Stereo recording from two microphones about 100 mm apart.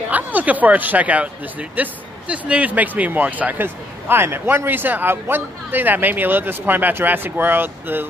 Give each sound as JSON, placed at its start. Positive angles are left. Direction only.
{"t": 0.1, "sound": "speech", "side_deg": -15}